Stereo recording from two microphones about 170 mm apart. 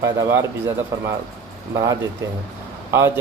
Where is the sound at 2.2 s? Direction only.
15° right (ahead or behind).